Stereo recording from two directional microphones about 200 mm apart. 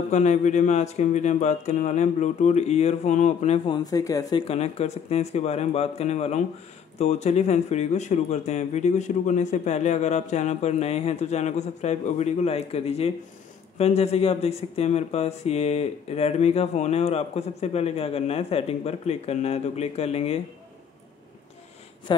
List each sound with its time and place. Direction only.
0.1 s speech: 35° left (ahead or behind); by 4.4 s 15° left (ahead or behind)
4.5 s speech: 30° left (ahead or behind)